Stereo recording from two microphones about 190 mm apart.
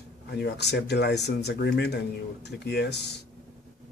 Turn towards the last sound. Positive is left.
turn(degrees=60)  # may be behind; listen again after turning